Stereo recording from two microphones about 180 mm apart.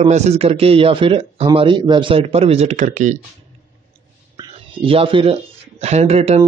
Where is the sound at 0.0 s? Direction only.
35° right (ahead or behind).